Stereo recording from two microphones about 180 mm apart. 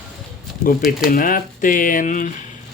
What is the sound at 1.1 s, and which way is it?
Speech, 50° left (ahead or behind).